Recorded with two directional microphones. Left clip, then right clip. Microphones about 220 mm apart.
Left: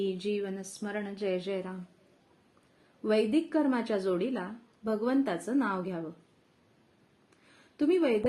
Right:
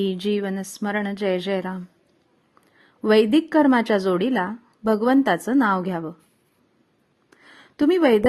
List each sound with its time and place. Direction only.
0.0 s a woman's voice: 50° right (ahead or behind)
3.0 s a woman's voice: 45° right (ahead or behind)
7.8 s a woman's voice: 45° right (ahead or behind)